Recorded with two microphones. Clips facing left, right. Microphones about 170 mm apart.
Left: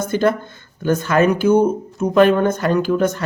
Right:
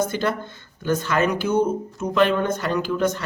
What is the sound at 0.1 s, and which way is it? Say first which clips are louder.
Speech: left 7 dB; 50° left (ahead or behind).